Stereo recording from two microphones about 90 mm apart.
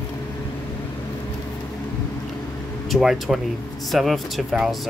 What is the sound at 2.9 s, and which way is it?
Speech, 5° right (ahead or behind).